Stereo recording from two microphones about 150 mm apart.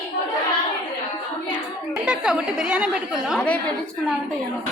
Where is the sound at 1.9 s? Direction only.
5° right (ahead or behind).